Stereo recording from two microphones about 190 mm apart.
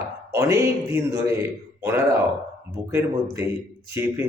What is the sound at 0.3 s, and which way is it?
A man's voice, 15° right (ahead or behind).